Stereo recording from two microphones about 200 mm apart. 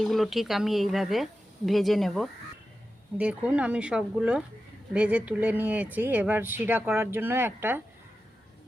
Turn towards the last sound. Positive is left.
turn(degrees=-10)  # may be behind; listen again after turning